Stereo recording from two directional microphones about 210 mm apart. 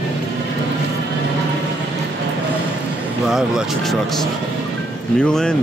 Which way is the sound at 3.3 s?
Centre (ahead or behind).